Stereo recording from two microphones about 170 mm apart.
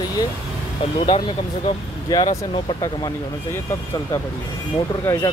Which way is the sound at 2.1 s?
25° left (ahead or behind).